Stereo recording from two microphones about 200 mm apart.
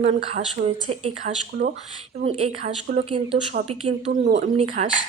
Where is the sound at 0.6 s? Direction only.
45° right (ahead or behind).